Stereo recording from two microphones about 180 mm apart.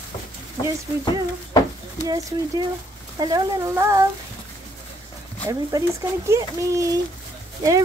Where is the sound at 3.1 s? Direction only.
20° right (ahead or behind).